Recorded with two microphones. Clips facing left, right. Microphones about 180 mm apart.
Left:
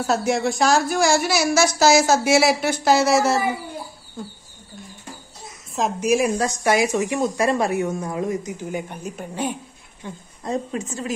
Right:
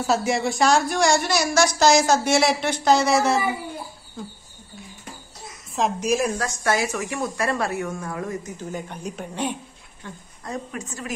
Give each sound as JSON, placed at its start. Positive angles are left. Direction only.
{"t": 0.0, "sound": "speech", "side_deg": 0}
{"t": 5.8, "sound": "speech", "side_deg": 5}
{"t": 10.0, "sound": "a woman's voice", "side_deg": 25}